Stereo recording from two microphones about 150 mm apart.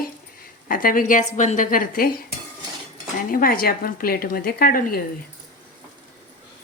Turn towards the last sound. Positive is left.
turn(degrees=80)